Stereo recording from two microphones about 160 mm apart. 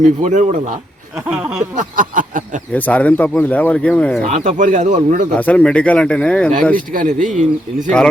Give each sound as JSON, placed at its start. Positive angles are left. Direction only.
{"t": 0.2, "sound": "speech", "side_deg": -50}
{"t": 1.7, "sound": "a sound", "side_deg": -55}
{"t": 2.7, "sound": "speech", "side_deg": 10}
{"t": 4.2, "sound": "speech", "side_deg": -50}
{"t": 5.3, "sound": "speech", "side_deg": 10}
{"t": 6.7, "sound": "speech", "side_deg": -55}